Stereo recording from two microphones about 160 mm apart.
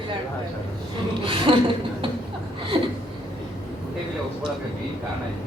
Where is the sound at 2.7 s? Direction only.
35° right (ahead or behind).